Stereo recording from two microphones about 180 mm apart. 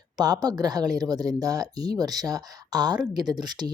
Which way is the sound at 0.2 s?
20° right (ahead or behind).